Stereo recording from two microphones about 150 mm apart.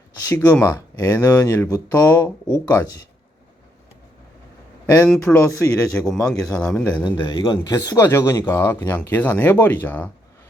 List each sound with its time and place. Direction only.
0.3 s speech: 10° left (ahead or behind)
1.3 s speech: 20° left (ahead or behind)
4.9 s speech: centre (ahead or behind)
7.3 s speech: 30° left (ahead or behind); by 10.1 s 10° left (ahead or behind)